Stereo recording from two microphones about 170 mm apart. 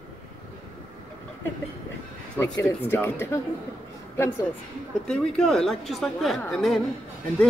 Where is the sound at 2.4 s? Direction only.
15° left (ahead or behind).